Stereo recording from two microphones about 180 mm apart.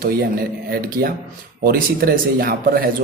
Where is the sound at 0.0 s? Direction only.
55° right (ahead or behind).